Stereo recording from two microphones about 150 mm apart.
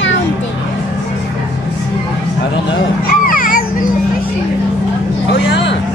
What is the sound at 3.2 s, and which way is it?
Children playing, 65° left (ahead or behind).